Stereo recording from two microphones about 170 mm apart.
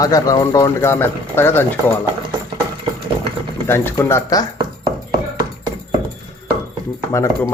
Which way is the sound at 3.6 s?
15° left (ahead or behind).